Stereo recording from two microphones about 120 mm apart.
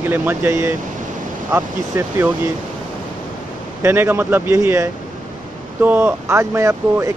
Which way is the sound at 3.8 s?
20° right (ahead or behind).